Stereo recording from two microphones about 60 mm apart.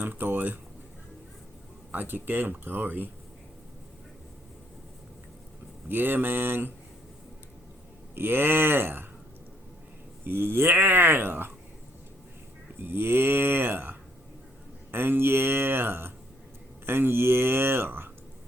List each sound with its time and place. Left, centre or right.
0.0 s speech: right
1.9 s speech: right
5.9 s speech: right
8.1 s speech: right
10.2 s speech: right
12.8 s speech: right
14.9 s speech: right